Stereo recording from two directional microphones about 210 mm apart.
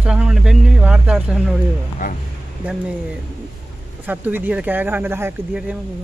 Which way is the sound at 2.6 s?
5° right (ahead or behind).